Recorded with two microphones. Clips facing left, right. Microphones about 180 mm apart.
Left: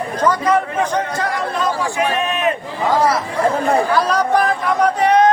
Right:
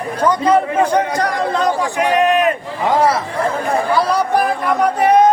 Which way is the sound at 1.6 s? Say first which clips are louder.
Even; 15° right (ahead or behind).